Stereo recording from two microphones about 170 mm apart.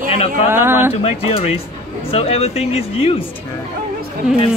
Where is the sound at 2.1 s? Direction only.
35° left (ahead or behind).